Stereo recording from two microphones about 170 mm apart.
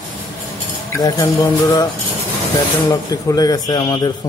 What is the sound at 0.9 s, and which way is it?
Speech, 20° left (ahead or behind).